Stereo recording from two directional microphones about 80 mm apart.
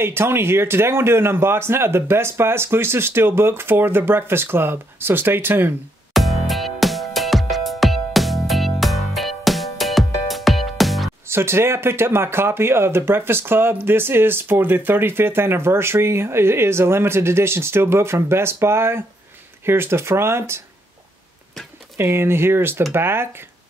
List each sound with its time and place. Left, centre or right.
0.0 s speech: right
6.1 s music: centre
11.2 s speech: right
21.9 s speech: right